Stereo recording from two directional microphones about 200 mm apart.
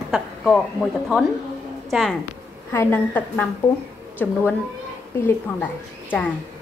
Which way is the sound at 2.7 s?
10° left (ahead or behind).